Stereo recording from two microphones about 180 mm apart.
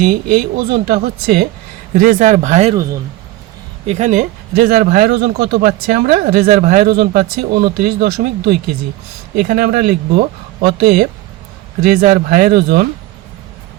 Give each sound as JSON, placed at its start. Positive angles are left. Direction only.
{"t": 0.0, "sound": "a man's voice", "side_deg": -45}
{"t": 2.0, "sound": "speech", "side_deg": -50}
{"t": 3.8, "sound": "a man's voice", "side_deg": -40}